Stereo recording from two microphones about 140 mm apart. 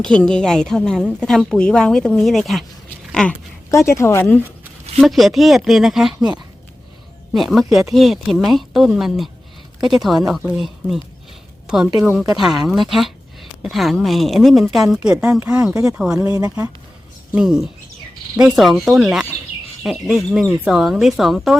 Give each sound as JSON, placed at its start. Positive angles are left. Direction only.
{"t": 0.0, "sound": "a woman's voice", "side_deg": 5}
{"t": 3.7, "sound": "speech", "side_deg": 20}
{"t": 4.9, "sound": "a woman's voice", "side_deg": 0}
{"t": 7.3, "sound": "a woman's voice", "side_deg": 0}
{"t": 15.7, "sound": "speech", "side_deg": -25}
{"t": 16.0, "sound": "a woman's voice", "side_deg": -5}